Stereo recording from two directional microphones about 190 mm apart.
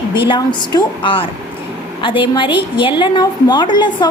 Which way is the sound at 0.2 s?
25° left (ahead or behind).